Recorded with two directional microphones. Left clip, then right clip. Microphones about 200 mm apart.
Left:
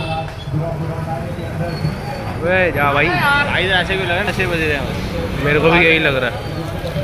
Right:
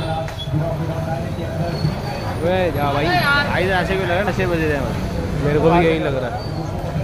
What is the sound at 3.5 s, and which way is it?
Speech, 65° right (ahead or behind).